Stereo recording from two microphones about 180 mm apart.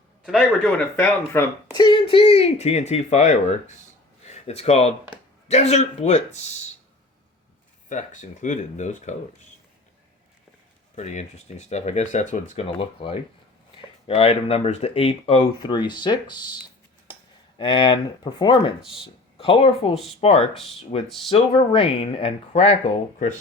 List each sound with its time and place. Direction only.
0.3 s speech: 5° left (ahead or behind)
1.7 s speech: 25° left (ahead or behind)
7.9 s speech: 45° left (ahead or behind)
10.9 s speech: 40° left (ahead or behind); by 16.6 s 25° left (ahead or behind)
17.6 s speech: 25° left (ahead or behind)